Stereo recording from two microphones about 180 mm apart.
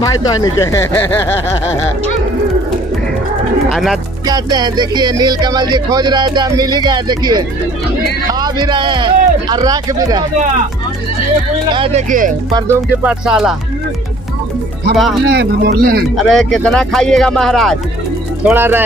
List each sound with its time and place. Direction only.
0.0 s speech: 20° left (ahead or behind)
3.7 s speech: centre (ahead or behind)
4.3 s speech: 20° right (ahead or behind)
11.7 s speech: 30° right (ahead or behind)
12.1 s speech: 45° right (ahead or behind)
12.5 s music: 15° right (ahead or behind)
13.2 s speech: 5° right (ahead or behind)
15.3 s speech: 65° right (ahead or behind)
16.2 s speech: centre (ahead or behind)
18.4 s music: 10° right (ahead or behind)